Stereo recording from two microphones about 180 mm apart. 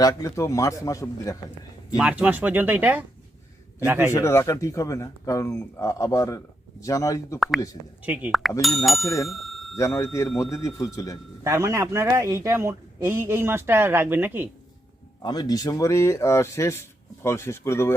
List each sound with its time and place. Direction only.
0.0 s speech: 20° left (ahead or behind)
2.0 s a man's voice: 10° right (ahead or behind)
4.1 s speech: 15° left (ahead or behind)
7.3 s a man's voice: centre (ahead or behind)
9.2 s bicycle bell: centre (ahead or behind)
9.7 s speech: 15° left (ahead or behind)
11.4 s a man's voice: 15° right (ahead or behind)
15.2 s speech: 20° left (ahead or behind)